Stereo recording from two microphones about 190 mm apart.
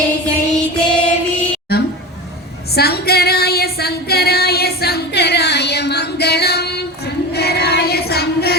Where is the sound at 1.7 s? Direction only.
55° left (ahead or behind).